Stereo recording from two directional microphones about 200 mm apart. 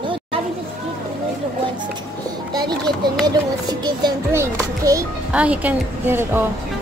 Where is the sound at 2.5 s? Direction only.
20° right (ahead or behind).